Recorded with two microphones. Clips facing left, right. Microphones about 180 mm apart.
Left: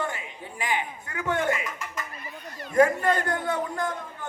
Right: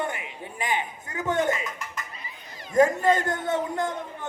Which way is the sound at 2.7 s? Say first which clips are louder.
Right 1 dB; 20° right (ahead or behind).